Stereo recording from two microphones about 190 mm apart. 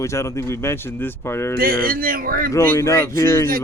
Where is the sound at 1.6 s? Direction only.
50° right (ahead or behind).